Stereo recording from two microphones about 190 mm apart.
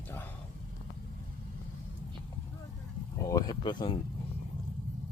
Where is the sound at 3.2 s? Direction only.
20° left (ahead or behind).